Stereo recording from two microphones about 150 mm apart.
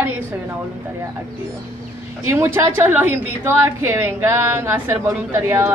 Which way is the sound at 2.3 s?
15° right (ahead or behind).